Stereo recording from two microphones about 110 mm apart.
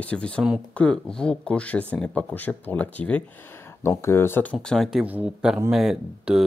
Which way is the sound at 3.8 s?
25° left (ahead or behind).